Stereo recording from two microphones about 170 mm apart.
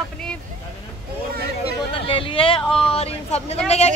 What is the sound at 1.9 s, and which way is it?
Speech, 30° left (ahead or behind).